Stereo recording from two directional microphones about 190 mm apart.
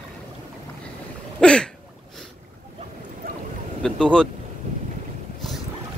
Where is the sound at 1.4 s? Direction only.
5° left (ahead or behind).